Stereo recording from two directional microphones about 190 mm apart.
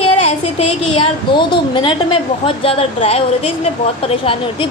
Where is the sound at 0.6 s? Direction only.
30° left (ahead or behind).